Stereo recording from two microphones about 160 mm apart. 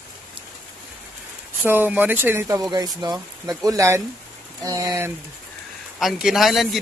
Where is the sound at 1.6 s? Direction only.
10° right (ahead or behind).